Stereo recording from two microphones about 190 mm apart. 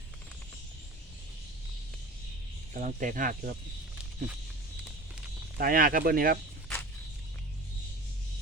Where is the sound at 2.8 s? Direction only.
45° right (ahead or behind).